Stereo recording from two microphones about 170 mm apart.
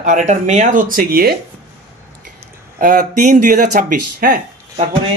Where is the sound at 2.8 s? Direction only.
50° right (ahead or behind).